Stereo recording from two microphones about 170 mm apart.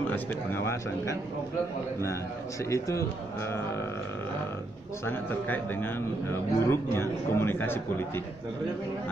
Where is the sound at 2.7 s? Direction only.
20° left (ahead or behind).